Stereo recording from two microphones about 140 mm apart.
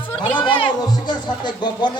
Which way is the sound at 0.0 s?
35° left (ahead or behind).